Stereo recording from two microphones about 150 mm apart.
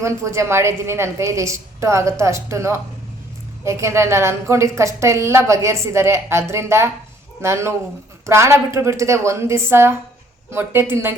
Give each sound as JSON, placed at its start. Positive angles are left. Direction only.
{"t": 0.0, "sound": "a woman's voice", "side_deg": -20}